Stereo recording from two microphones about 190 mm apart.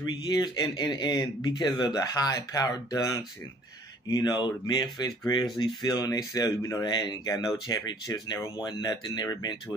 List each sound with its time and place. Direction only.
0.0 s speech: 20° left (ahead or behind)